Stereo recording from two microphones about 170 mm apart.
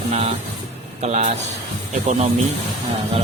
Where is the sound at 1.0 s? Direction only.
45° right (ahead or behind).